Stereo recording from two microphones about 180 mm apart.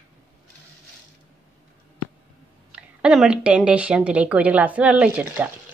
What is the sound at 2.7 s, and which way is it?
Speech, 5° right (ahead or behind).